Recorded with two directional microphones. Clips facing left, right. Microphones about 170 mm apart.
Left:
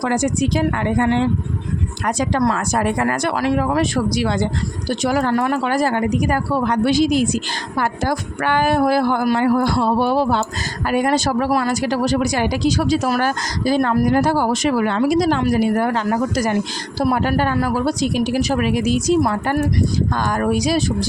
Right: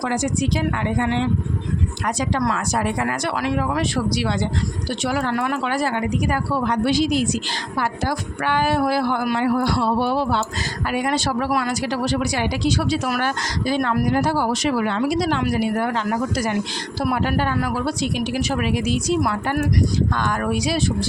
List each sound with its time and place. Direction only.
0.0 s a woman's voice: 50° left (ahead or behind)